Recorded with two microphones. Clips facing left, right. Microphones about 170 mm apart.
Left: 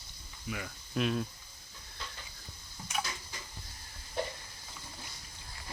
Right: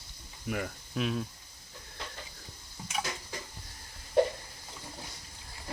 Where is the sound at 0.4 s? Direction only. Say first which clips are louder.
Right 6 dB; 50° right (ahead or behind).